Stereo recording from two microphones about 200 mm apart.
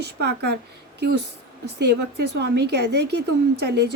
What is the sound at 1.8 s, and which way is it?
A woman's voice, 55° right (ahead or behind).